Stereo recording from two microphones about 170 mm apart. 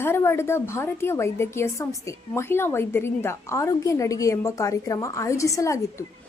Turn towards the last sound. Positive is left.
turn(degrees=20)  # may be behind; listen again after turning